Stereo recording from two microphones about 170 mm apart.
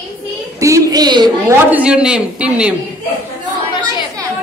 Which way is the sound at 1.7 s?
5° right (ahead or behind).